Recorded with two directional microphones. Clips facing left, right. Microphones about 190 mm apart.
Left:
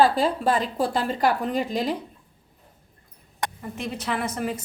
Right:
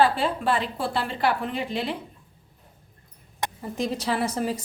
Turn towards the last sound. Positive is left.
turn(degrees=-30)  # may be behind; listen again after turning